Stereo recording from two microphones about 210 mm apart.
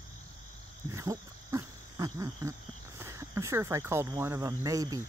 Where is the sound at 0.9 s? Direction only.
15° right (ahead or behind).